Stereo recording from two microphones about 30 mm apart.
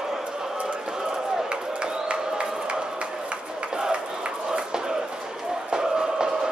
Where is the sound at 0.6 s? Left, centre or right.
Right.